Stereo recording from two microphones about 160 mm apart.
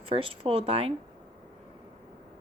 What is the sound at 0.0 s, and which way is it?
Speech, 35° right (ahead or behind).